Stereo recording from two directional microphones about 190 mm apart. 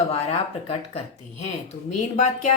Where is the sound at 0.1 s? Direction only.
30° left (ahead or behind).